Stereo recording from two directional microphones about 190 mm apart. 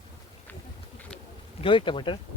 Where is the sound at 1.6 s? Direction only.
25° left (ahead or behind).